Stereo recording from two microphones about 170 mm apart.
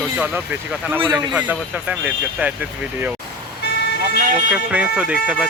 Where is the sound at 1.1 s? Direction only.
10° right (ahead or behind).